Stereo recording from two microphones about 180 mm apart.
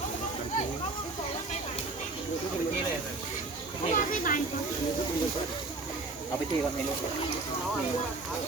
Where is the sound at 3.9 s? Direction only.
45° left (ahead or behind).